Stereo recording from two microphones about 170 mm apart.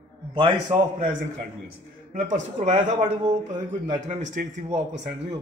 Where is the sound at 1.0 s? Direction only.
50° right (ahead or behind).